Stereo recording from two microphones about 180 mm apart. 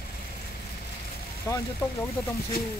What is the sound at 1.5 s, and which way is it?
Speech, 15° left (ahead or behind).